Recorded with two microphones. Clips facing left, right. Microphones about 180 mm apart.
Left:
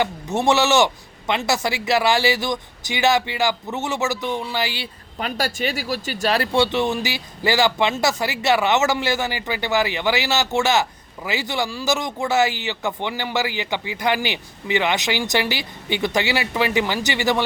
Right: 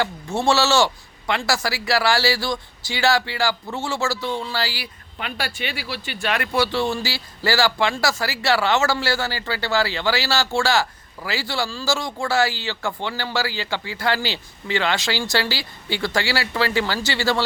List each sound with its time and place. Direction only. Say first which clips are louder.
0.0 s speech: left 1 dB; 20° left (ahead or behind)
5.2 s speech: left 5 dB; 45° left (ahead or behind); by 17.4 s 20° left (ahead or behind)